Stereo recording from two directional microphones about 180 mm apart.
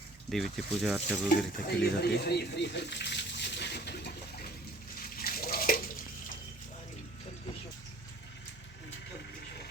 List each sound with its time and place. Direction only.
0.3 s speech: centre (ahead or behind)
1.6 s speech: 65° left (ahead or behind)
5.1 s bathtub: 55° left (ahead or behind)